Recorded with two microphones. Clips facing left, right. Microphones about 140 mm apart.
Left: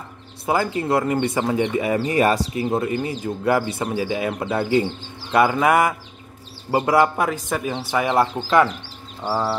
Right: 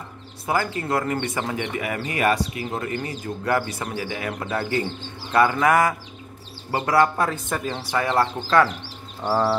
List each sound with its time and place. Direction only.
0.5 s speech: 20° left (ahead or behind); by 7.8 s 5° left (ahead or behind)
7.9 s speech: 15° left (ahead or behind)
9.2 s speech: centre (ahead or behind)